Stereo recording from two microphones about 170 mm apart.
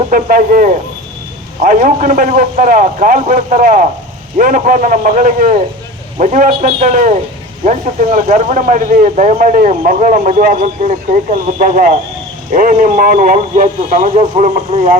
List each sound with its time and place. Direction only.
0.1 s speech: 55° right (ahead or behind)